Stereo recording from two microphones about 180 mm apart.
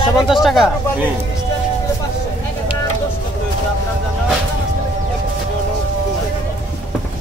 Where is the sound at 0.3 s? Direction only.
Centre (ahead or behind).